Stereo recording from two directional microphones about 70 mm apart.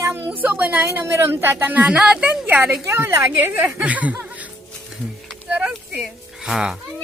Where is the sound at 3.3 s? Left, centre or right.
Right.